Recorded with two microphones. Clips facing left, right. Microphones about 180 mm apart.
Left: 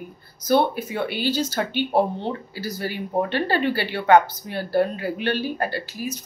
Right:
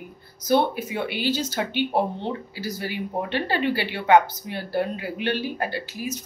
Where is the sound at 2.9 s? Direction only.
15° right (ahead or behind).